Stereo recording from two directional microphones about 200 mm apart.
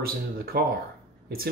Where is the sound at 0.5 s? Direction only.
50° right (ahead or behind).